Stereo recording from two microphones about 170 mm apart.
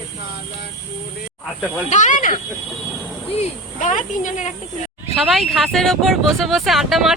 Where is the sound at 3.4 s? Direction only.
50° left (ahead or behind).